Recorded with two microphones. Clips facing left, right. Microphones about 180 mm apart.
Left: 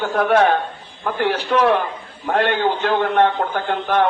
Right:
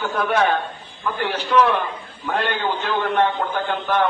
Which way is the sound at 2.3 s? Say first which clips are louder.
Left 5 dB; 60° left (ahead or behind).